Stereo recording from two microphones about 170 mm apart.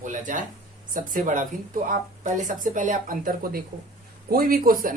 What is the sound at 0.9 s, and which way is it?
Speech, 50° right (ahead or behind).